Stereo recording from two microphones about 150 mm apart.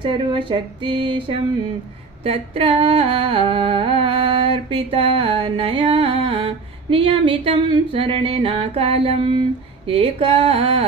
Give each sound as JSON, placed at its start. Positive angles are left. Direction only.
{"t": 0.0, "sound": "humming", "side_deg": -30}